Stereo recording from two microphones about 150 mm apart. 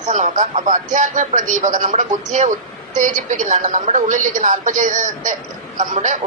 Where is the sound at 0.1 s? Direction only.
55° right (ahead or behind).